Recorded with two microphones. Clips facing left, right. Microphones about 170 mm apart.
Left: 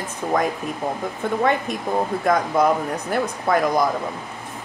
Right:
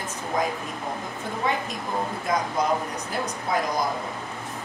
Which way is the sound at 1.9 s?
60° left (ahead or behind).